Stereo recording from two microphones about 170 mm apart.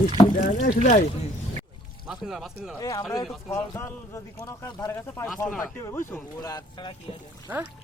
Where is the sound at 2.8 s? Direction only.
20° left (ahead or behind).